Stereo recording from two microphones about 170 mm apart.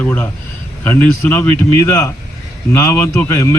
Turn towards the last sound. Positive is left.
turn(degrees=15)  # may be behind; listen again after turning